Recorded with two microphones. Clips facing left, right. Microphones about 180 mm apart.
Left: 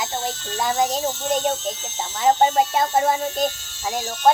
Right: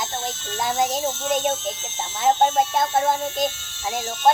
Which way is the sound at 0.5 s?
Centre (ahead or behind).